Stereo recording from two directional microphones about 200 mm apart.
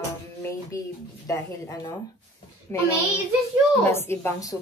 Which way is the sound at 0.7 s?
15° left (ahead or behind).